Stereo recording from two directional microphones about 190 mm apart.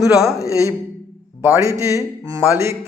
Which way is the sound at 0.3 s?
15° left (ahead or behind).